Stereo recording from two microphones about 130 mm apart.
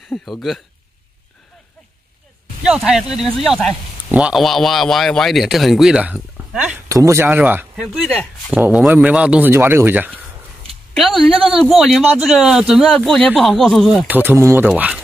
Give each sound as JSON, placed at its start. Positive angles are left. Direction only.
{"t": 0.1, "sound": "speech", "side_deg": 0}
{"t": 2.6, "sound": "speech", "side_deg": -5}
{"t": 6.9, "sound": "speech", "side_deg": -25}
{"t": 7.7, "sound": "speech", "side_deg": -5}
{"t": 11.5, "sound": "speech", "side_deg": 0}
{"t": 14.0, "sound": "speech", "side_deg": -15}
{"t": 14.7, "sound": "speech", "side_deg": -10}